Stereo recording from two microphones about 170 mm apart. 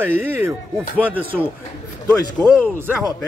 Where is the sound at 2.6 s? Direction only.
10° right (ahead or behind).